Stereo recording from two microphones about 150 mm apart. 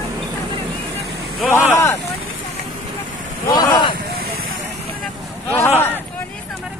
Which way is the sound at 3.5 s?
30° left (ahead or behind).